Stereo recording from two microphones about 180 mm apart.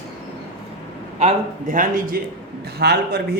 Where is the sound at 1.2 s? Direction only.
40° right (ahead or behind).